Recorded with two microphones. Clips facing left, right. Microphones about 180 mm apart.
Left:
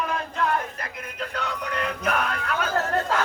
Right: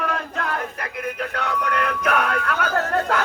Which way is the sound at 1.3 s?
60° right (ahead or behind).